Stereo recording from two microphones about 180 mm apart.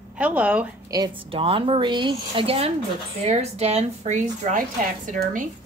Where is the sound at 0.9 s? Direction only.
25° right (ahead or behind).